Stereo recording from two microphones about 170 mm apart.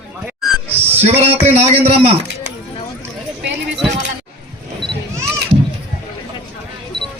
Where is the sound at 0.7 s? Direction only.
10° right (ahead or behind).